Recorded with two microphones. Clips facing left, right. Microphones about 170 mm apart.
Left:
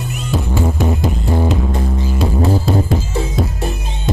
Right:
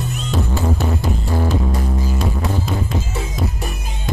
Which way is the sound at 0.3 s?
15° left (ahead or behind).